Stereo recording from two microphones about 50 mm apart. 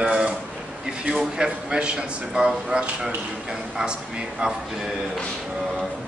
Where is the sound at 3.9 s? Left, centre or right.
Centre.